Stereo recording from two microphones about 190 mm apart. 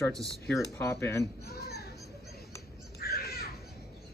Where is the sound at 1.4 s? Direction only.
55° left (ahead or behind).